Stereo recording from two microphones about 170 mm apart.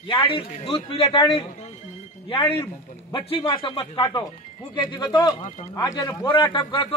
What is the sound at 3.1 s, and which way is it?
Speech, 30° left (ahead or behind).